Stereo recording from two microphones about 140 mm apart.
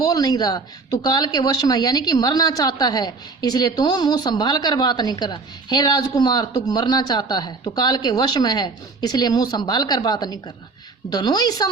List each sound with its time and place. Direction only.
0.0 s speech: 25° left (ahead or behind)